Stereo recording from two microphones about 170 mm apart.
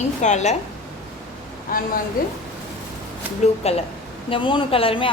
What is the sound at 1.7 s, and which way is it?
Speech, 55° left (ahead or behind).